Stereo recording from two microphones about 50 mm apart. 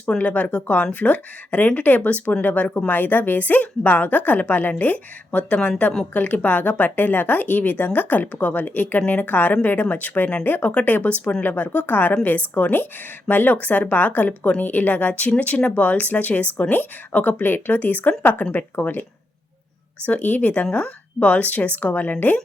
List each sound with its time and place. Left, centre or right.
0.2 s speech: left
5.5 s speech: centre
6.1 s speech: left
20.1 s speech: left